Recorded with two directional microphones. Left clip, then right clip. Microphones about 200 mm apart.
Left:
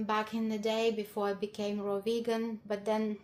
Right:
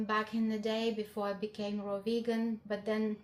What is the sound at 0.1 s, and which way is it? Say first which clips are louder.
A woman's voice: left 1 dB; 50° left (ahead or behind).